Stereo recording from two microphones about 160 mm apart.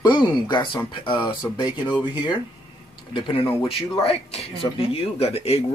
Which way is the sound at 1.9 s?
30° left (ahead or behind).